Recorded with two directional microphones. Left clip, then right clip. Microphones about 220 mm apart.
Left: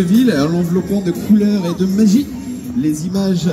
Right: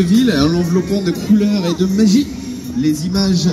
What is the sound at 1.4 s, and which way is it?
Speech, 45° left (ahead or behind).